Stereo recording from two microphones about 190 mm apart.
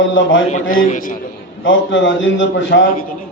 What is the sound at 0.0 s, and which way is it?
Speech, 80° left.